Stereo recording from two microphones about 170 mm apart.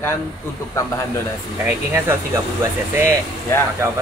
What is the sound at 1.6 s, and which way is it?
Speech, 10° right (ahead or behind).